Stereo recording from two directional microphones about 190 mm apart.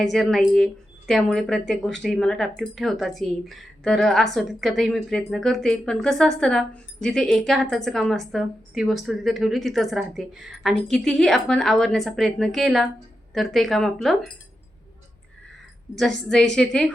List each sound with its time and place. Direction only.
0.0 s a woman's voice: centre (ahead or behind)
16.0 s a woman's voice: 5° left (ahead or behind)